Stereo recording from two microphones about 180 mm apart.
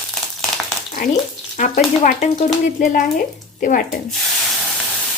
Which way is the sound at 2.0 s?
45° left (ahead or behind).